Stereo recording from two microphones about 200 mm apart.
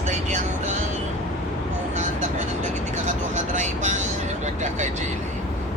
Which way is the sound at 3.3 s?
40° right (ahead or behind).